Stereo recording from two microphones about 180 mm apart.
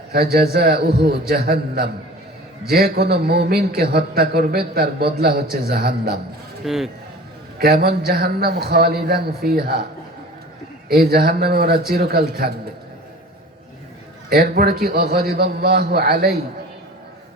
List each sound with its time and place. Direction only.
0.1 s a man's voice: 60° right (ahead or behind)
6.7 s speech: centre (ahead or behind)
7.6 s a man's voice: 55° right (ahead or behind)
10.8 s a man's voice: 60° right (ahead or behind)
14.3 s a man's voice: 60° right (ahead or behind)